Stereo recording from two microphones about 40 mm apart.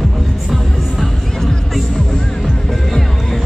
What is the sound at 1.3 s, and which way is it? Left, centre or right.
Music, centre.